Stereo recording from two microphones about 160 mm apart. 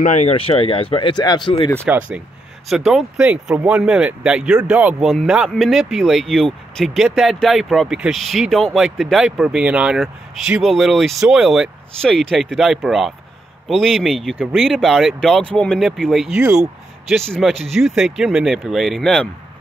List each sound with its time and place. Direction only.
0.0 s speech: 45° left (ahead or behind); by 1.5 s 25° left (ahead or behind)
1.9 s speech: 10° right (ahead or behind)